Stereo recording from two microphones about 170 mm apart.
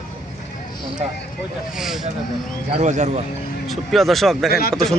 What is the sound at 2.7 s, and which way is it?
Speech, 45° right (ahead or behind).